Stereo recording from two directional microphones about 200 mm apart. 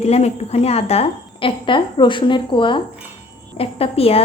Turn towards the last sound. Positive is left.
turn(degrees=30)  # may be behind; listen again after turning